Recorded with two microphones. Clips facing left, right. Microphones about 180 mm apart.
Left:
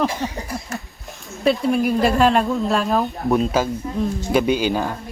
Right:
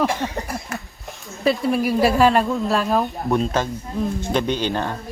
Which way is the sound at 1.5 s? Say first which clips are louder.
Left 1 dB; centre (ahead or behind).